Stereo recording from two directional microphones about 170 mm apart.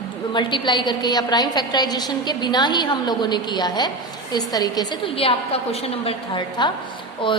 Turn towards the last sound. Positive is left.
turn(degrees=30)  # may be behind; listen again after turning